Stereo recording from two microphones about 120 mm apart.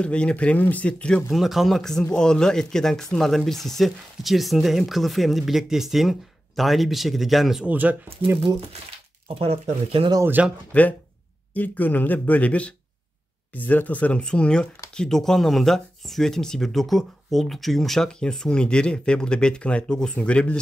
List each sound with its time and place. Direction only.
0.0 s speech: 10° left (ahead or behind)
7.7 s speech: 15° right (ahead or behind)
9.3 s speech: 55° right (ahead or behind)
10.2 s speech: 15° right (ahead or behind)
10.7 s speech: 10° left (ahead or behind)